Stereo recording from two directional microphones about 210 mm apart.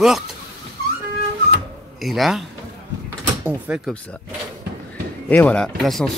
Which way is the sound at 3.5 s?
5° right (ahead or behind).